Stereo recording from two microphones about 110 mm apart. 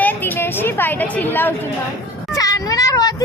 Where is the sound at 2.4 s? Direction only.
35° left (ahead or behind).